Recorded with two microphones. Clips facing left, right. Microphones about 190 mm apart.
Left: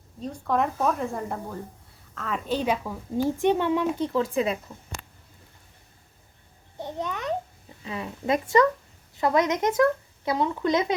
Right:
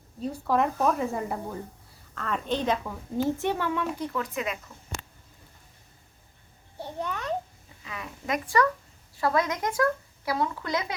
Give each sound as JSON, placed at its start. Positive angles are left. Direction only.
{"t": 0.2, "sound": "a woman's voice", "side_deg": -5}
{"t": 6.7, "sound": "babbling", "side_deg": 20}
{"t": 7.9, "sound": "speech", "side_deg": 30}